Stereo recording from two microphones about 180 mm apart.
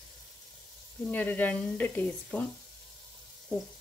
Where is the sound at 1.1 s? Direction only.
10° left (ahead or behind).